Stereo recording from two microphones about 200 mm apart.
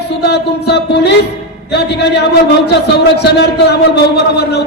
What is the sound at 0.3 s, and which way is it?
A man's voice, 55° left (ahead or behind).